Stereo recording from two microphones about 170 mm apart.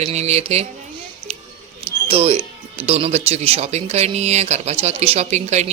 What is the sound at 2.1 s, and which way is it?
A woman's voice, 35° right (ahead or behind).